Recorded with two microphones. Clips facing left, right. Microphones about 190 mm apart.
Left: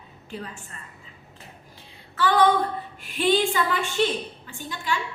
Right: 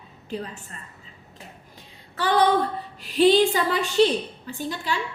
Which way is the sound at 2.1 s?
40° right (ahead or behind).